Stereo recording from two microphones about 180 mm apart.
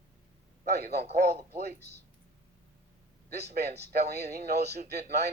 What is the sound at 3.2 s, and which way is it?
A man's voice, 65° right (ahead or behind).